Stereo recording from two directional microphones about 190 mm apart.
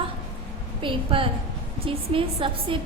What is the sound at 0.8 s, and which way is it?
A woman's voice, 25° right (ahead or behind).